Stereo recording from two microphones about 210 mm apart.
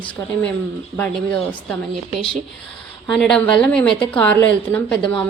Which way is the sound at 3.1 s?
Centre (ahead or behind).